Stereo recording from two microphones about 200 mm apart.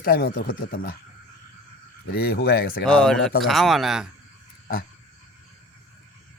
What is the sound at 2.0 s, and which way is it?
Speech, 50° left (ahead or behind).